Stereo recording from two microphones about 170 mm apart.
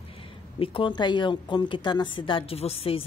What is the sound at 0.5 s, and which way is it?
Speech, 30° left (ahead or behind).